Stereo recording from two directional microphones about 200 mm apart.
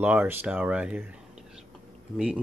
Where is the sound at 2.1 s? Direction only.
5° right (ahead or behind).